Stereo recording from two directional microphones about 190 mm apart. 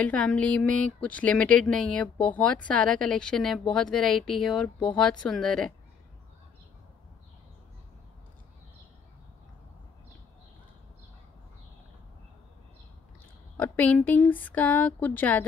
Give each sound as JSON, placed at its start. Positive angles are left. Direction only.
{"t": 0.0, "sound": "speech", "side_deg": 5}
{"t": 13.6, "sound": "speech", "side_deg": 10}